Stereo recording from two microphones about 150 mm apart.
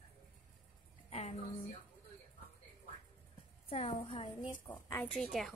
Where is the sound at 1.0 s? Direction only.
45° left (ahead or behind).